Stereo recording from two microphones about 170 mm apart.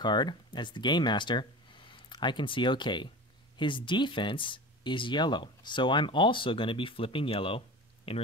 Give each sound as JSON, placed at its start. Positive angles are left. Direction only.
{"t": 0.0, "sound": "speech", "side_deg": 25}